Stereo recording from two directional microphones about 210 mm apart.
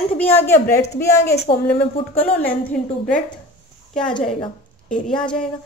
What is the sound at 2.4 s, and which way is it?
Speech, 5° left (ahead or behind).